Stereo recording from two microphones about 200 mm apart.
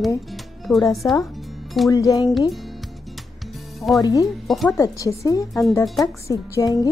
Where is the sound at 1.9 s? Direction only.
15° left (ahead or behind).